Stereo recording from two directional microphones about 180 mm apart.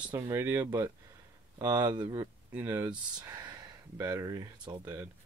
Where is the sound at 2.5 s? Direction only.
15° right (ahead or behind).